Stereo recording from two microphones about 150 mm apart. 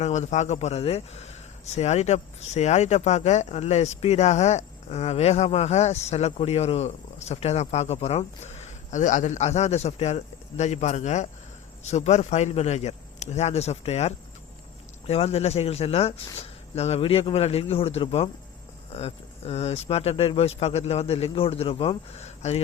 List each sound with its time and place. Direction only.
0.0 s speech: 50° left (ahead or behind)